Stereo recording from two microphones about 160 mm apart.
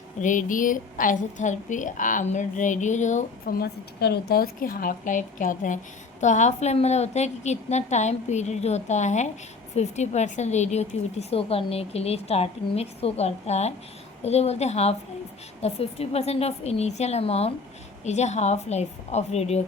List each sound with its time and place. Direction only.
0.2 s a woman's voice: 55° left (ahead or behind)
3.6 s a woman's voice: 85° left; by 19.6 s 40° left (ahead or behind)